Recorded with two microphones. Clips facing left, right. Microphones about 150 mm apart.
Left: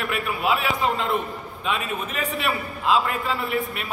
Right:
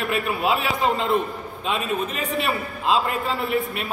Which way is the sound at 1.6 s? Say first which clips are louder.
Right 3 dB; 30° right (ahead or behind).